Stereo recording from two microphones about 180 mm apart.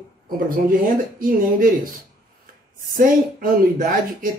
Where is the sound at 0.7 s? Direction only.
50° right (ahead or behind).